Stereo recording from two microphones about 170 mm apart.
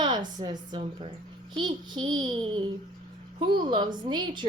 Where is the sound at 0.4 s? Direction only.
30° right (ahead or behind).